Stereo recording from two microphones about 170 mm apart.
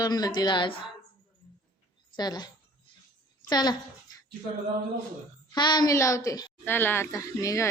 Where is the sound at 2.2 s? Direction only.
25° left (ahead or behind).